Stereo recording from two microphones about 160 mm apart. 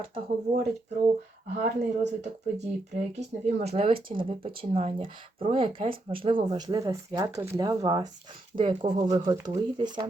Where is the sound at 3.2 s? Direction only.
45° right (ahead or behind); by 10.1 s 30° right (ahead or behind).